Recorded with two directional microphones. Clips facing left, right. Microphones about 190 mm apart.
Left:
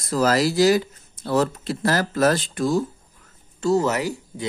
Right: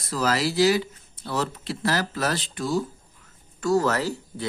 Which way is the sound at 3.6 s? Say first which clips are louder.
Left 2 dB; 20° left (ahead or behind).